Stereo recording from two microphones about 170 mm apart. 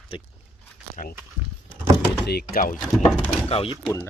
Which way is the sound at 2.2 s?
65° left (ahead or behind).